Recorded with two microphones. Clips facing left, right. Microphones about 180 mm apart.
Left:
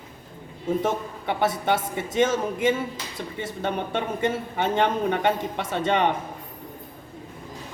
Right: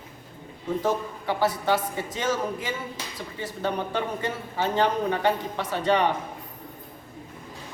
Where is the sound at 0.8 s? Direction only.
25° left (ahead or behind).